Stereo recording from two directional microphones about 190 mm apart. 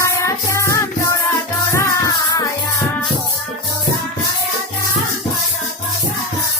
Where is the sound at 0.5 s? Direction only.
15° left (ahead or behind).